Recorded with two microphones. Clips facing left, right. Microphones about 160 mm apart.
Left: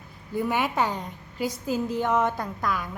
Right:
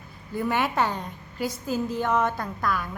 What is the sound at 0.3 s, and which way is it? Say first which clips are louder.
A woman's voice: even; 10° left (ahead or behind).